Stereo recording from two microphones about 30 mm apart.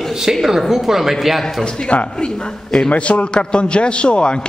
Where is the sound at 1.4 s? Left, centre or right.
Left.